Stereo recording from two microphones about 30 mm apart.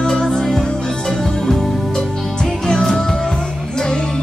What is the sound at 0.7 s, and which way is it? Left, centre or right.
Music, left.